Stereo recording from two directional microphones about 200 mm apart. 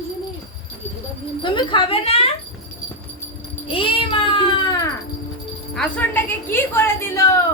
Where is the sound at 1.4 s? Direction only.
25° left (ahead or behind).